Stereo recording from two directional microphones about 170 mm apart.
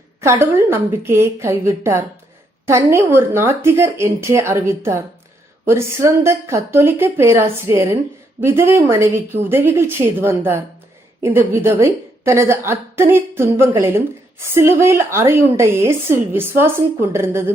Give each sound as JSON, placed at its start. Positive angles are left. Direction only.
{"t": 0.2, "sound": "a woman's voice", "side_deg": -15}